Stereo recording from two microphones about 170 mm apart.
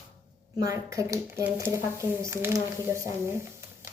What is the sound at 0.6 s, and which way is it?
A woman's voice, 20° right (ahead or behind).